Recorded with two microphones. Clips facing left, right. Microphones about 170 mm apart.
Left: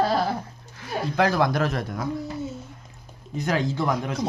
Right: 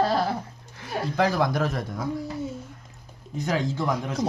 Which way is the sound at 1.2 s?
70° left (ahead or behind).